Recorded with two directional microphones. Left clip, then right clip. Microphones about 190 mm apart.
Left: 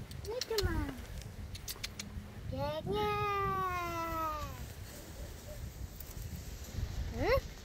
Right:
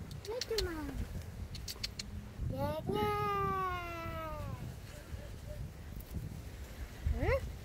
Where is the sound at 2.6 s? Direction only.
25° left (ahead or behind).